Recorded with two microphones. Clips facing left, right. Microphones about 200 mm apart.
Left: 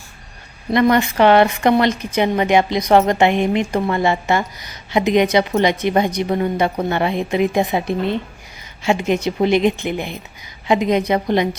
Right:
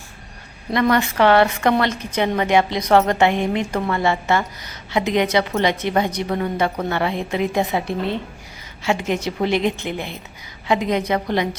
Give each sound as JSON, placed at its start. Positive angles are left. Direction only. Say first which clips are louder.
{"t": 0.7, "sound": "a woman's voice", "louder": "left 3 dB", "side_deg": 20}